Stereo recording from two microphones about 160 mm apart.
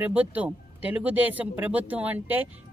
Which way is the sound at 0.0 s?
10° right (ahead or behind).